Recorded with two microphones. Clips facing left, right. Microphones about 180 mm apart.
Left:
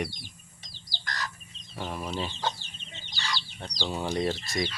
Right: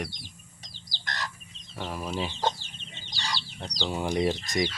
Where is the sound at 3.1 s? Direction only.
40° right (ahead or behind).